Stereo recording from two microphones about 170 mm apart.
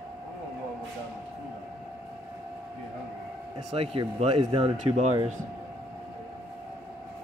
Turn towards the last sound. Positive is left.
turn(degrees=-40)  # may be behind; listen again after turning